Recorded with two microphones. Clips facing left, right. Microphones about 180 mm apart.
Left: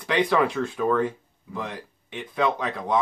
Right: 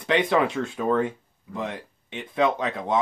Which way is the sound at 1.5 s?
25° right (ahead or behind).